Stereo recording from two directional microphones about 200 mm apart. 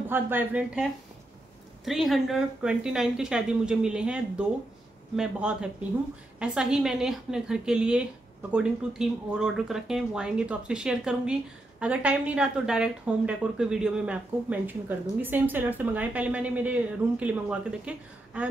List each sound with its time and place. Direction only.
0.1 s a woman's voice: 10° right (ahead or behind)
1.9 s a woman's voice: centre (ahead or behind)